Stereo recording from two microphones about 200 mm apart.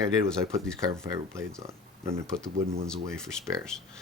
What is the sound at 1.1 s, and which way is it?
Speech, 15° right (ahead or behind).